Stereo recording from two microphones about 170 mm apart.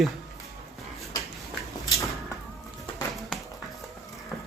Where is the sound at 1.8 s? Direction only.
20° left (ahead or behind).